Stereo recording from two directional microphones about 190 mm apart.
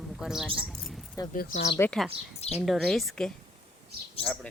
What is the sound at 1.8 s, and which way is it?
Speech, 5° left (ahead or behind).